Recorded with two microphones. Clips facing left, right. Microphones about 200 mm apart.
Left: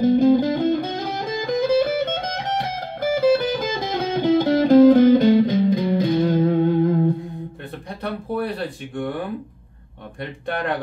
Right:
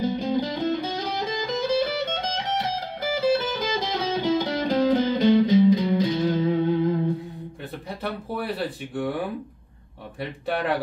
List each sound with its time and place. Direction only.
0.0 s music: 50° left (ahead or behind)
8.0 s speech: 5° right (ahead or behind)
10.2 s speech: 5° right (ahead or behind)